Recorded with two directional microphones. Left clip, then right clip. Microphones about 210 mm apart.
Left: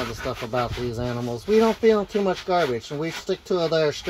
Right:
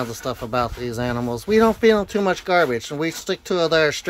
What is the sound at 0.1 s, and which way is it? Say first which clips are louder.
Speech: right 3 dB; 30° right (ahead or behind).